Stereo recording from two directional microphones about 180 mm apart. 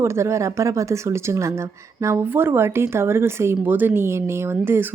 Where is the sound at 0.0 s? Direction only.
15° right (ahead or behind).